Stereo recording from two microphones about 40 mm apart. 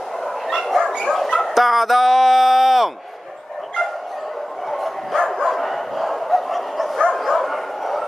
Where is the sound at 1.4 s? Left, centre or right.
Centre.